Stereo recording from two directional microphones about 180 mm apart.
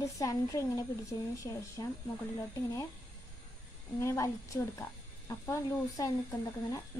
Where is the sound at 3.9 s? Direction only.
15° left (ahead or behind).